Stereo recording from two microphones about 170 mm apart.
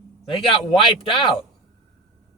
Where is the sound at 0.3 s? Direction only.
30° left (ahead or behind).